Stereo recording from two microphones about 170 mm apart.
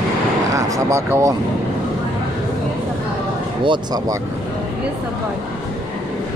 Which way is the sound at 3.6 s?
30° right (ahead or behind).